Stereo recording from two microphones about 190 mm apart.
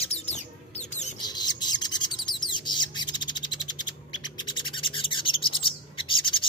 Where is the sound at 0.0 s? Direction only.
35° left (ahead or behind).